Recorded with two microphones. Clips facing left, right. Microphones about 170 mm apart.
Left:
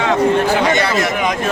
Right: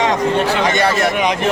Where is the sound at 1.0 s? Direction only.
20° right (ahead or behind).